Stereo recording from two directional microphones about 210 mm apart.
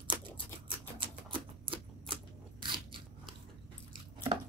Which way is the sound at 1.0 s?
25° right (ahead or behind).